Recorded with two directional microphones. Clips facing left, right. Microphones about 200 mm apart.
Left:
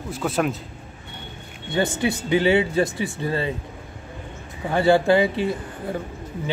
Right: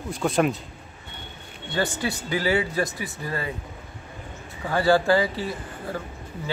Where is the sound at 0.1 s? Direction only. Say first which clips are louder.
Right 1 dB; 5° left (ahead or behind).